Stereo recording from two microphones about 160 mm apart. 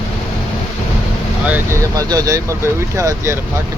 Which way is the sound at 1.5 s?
15° right (ahead or behind).